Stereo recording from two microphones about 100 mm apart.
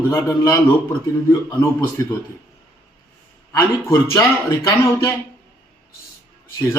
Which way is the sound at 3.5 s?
30° left (ahead or behind).